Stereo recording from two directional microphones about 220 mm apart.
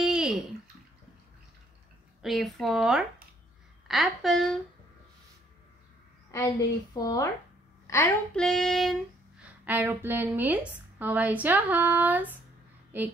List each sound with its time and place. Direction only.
0.0 s bathtub: 5° right (ahead or behind)
2.2 s speech: centre (ahead or behind)
6.3 s a woman's voice: 15° left (ahead or behind)
8.4 s a woman's voice: centre (ahead or behind)